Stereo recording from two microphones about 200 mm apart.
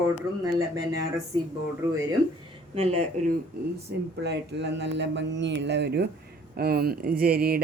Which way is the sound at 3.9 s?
60° right (ahead or behind).